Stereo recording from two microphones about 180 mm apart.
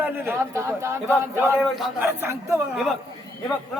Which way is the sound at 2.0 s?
15° right (ahead or behind).